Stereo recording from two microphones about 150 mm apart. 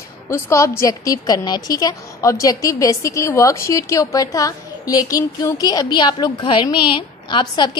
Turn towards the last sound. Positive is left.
turn(degrees=30)  # may be behind; listen again after turning